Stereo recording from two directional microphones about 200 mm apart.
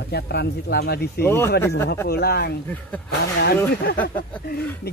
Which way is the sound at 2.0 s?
50° left (ahead or behind).